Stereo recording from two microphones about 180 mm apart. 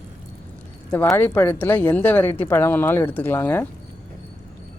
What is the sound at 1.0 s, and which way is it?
Speech, 10° left (ahead or behind).